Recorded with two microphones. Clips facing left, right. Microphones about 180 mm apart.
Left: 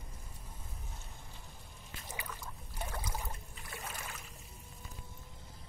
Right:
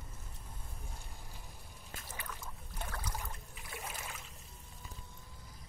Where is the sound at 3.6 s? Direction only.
10° right (ahead or behind).